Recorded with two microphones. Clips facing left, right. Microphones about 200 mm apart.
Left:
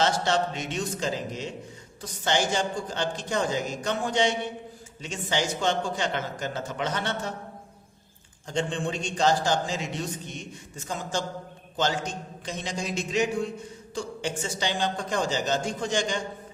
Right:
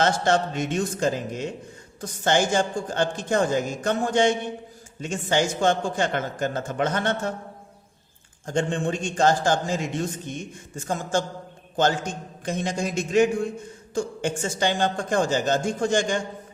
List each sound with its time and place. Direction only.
0.0 s a man's voice: 50° right (ahead or behind)
8.4 s a man's voice: 50° right (ahead or behind)